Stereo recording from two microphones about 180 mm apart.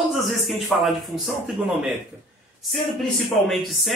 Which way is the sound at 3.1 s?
Centre (ahead or behind).